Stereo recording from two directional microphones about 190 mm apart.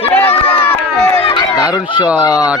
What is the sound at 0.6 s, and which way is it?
Run, 15° left (ahead or behind).